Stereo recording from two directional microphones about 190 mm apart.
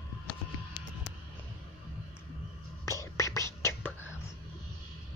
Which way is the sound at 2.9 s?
15° left (ahead or behind).